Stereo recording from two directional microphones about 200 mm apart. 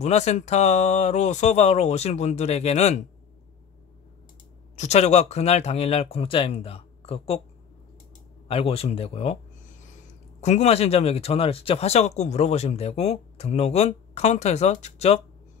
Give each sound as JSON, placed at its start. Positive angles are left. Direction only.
{"t": 0.0, "sound": "speech", "side_deg": 35}
{"t": 4.7, "sound": "speech", "side_deg": 35}
{"t": 8.5, "sound": "speech", "side_deg": 30}
{"t": 10.4, "sound": "speech", "side_deg": 35}